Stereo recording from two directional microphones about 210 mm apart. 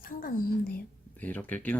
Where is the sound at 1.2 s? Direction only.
5° left (ahead or behind).